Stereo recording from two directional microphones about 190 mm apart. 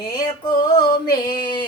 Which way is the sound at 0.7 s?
25° left (ahead or behind).